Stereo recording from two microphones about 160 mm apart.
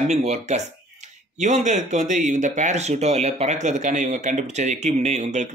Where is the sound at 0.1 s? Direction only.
45° right (ahead or behind).